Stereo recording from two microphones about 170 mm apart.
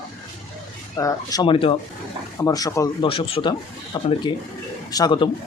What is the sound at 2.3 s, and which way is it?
Speech, 20° left (ahead or behind).